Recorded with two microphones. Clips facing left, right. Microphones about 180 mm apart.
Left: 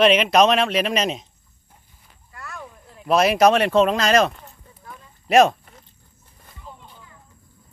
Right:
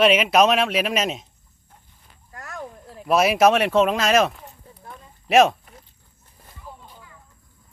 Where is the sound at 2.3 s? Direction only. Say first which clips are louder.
Right 3 dB; 45° right (ahead or behind).